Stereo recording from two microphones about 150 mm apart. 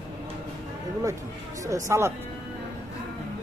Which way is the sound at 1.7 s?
20° right (ahead or behind).